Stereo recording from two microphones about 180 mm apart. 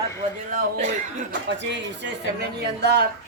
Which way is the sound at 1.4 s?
80° right.